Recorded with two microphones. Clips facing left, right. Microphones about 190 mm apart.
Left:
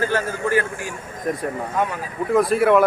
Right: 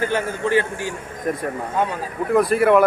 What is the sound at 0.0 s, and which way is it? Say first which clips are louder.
Speech: even; 20° right (ahead or behind).